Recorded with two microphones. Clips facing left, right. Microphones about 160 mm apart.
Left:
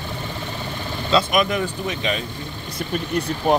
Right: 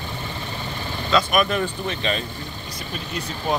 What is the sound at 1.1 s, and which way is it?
Speech, 20° left (ahead or behind).